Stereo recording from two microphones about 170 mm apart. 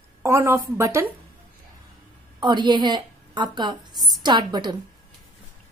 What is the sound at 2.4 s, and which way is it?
A woman's voice, 25° right (ahead or behind).